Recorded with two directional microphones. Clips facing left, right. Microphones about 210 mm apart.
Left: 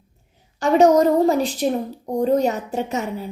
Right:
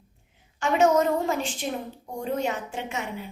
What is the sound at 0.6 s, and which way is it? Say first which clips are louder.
A woman's voice: left 7 dB; 35° left (ahead or behind).